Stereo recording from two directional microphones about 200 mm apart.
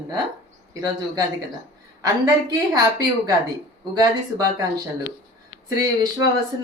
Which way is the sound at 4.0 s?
20° right (ahead or behind).